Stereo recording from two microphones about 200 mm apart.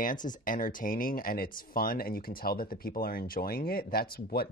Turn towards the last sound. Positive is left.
turn(degrees=50)  # may be behind; listen again after turning